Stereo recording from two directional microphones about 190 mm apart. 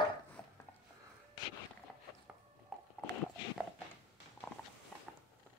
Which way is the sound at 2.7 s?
Centre (ahead or behind).